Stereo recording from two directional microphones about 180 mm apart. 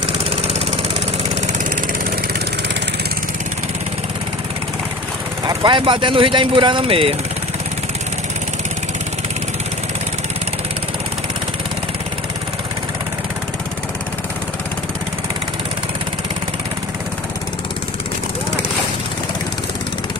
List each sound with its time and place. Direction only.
0.2 s vehicle: 40° right (ahead or behind)
5.4 s speech: 25° right (ahead or behind)